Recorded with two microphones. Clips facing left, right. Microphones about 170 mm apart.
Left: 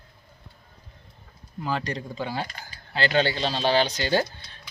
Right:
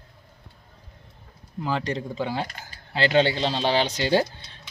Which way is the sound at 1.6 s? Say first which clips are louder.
Right 2 dB; 20° right (ahead or behind).